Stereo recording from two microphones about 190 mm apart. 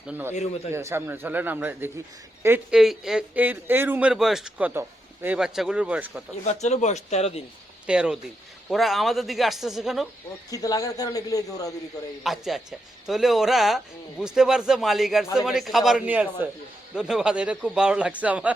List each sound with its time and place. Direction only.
0.1 s speech: 10° right (ahead or behind)
0.3 s speech: 35° left (ahead or behind)
0.7 s a man's voice: 15° right (ahead or behind)
6.4 s speech: 35° left (ahead or behind)
7.9 s a man's voice: 5° right (ahead or behind)
10.5 s a man's voice: 20° left (ahead or behind)
12.2 s a man's voice: centre (ahead or behind)